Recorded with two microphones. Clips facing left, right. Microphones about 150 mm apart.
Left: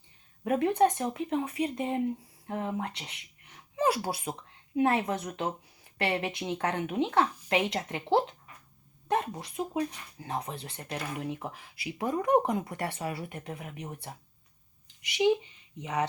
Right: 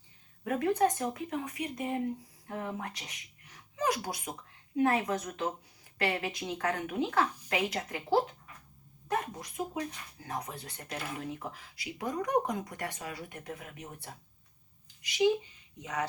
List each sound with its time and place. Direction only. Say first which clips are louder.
0.4 s a woman's voice: left 3 dB; 25° left (ahead or behind)
11.9 s a woman's voice: left 5 dB; 30° left (ahead or behind)
15.8 s a woman's voice: left 4 dB; 25° left (ahead or behind)